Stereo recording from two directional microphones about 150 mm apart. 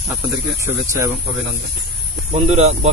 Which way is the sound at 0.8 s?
20° right (ahead or behind).